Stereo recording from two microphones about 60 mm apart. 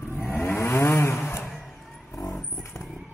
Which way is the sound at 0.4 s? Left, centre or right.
Left.